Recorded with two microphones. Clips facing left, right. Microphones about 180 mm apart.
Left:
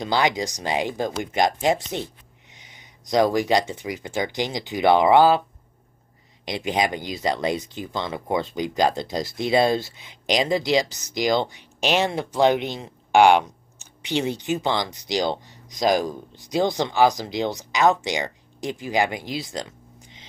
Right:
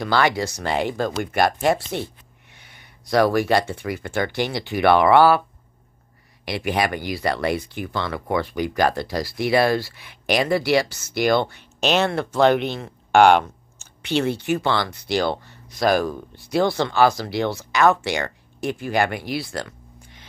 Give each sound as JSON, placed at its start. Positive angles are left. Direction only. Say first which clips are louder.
{"t": 0.0, "sound": "speech", "louder": "right 2 dB", "side_deg": 20}
{"t": 6.4, "sound": "speech", "louder": "right 1 dB", "side_deg": 20}